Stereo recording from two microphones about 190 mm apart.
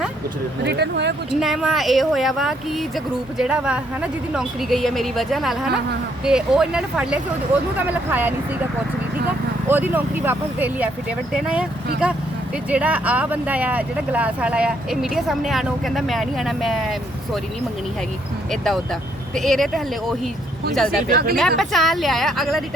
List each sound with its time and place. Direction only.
0.6 s speech: 60° right (ahead or behind)
1.3 s speech: centre (ahead or behind)
9.6 s speech: 10° right (ahead or behind)
12.7 s speech: 5° right (ahead or behind)
19.4 s speech: centre (ahead or behind)
21.1 s speech: 50° right (ahead or behind)
21.3 s speech: centre (ahead or behind)